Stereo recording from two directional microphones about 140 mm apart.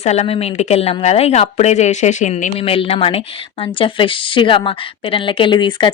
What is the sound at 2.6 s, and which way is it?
A woman's voice, 40° left (ahead or behind).